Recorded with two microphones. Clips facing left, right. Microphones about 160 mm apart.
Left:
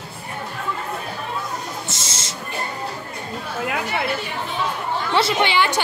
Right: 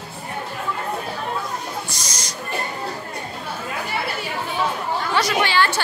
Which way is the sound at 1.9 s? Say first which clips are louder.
Left 1 dB; 25° left (ahead or behind).